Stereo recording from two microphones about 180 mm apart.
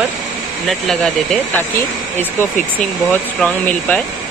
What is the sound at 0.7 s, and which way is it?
Speech, centre (ahead or behind).